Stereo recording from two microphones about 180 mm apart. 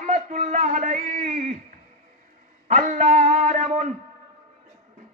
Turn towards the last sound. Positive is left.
turn(degrees=-40)  # may be behind; listen again after turning